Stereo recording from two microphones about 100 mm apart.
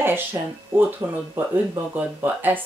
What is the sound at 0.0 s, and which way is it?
Speech, 20° right (ahead or behind).